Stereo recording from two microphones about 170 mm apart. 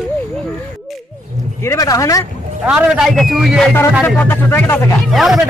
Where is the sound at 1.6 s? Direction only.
20° left (ahead or behind).